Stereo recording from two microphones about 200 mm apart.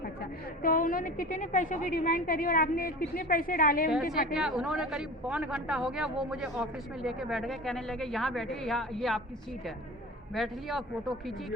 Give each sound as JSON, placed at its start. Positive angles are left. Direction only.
{"t": 0.0, "sound": "a woman's voice", "side_deg": 45}
{"t": 4.4, "sound": "a man's voice", "side_deg": 0}
{"t": 10.3, "sound": "a man's voice", "side_deg": 0}